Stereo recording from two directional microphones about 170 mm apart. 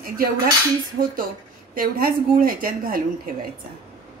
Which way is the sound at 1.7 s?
55° right (ahead or behind).